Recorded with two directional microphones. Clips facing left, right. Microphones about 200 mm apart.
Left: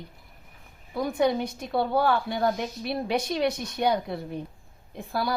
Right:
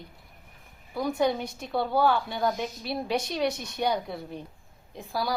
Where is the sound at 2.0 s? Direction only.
55° left (ahead or behind).